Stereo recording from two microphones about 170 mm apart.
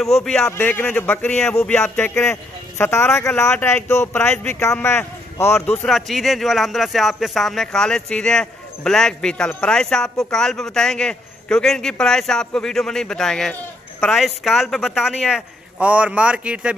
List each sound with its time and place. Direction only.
0.0 s speech: 5° left (ahead or behind)
5.9 s speech: centre (ahead or behind)